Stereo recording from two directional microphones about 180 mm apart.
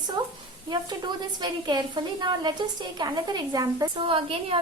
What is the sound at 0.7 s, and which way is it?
A woman's voice, 25° right (ahead or behind).